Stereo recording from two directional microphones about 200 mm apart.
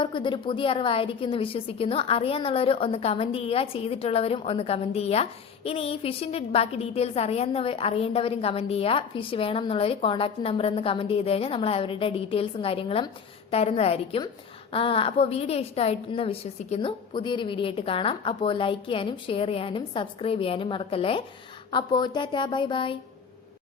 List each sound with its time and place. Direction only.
0.0 s a woman's voice: 25° left (ahead or behind)